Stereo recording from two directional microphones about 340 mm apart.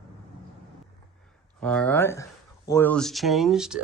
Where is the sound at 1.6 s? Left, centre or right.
Centre.